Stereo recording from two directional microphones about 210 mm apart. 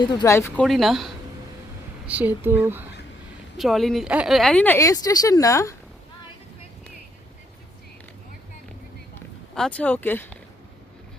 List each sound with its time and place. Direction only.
0.0 s speech: 20° left (ahead or behind)
9.1 s speech: 5° left (ahead or behind)